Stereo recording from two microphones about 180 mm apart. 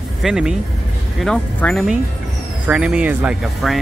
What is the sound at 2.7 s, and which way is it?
Speech, 5° right (ahead or behind).